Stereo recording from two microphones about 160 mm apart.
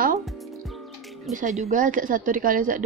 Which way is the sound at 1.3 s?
50° right (ahead or behind).